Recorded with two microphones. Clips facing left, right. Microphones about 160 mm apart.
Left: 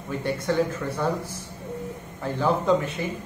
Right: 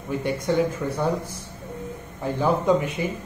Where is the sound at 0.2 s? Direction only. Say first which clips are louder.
Right 1 dB; 15° right (ahead or behind).